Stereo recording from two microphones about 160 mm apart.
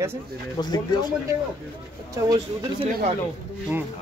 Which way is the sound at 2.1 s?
25° right (ahead or behind).